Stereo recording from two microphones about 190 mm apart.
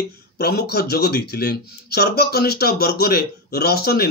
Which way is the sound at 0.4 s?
55° left (ahead or behind).